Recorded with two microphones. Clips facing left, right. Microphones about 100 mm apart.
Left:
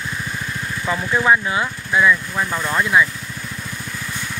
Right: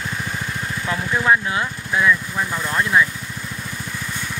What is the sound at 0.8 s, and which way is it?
Speech, 5° left (ahead or behind).